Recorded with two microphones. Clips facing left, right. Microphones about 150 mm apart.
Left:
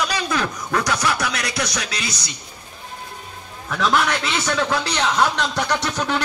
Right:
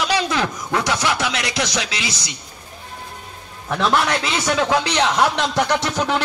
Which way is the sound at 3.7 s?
30° right (ahead or behind).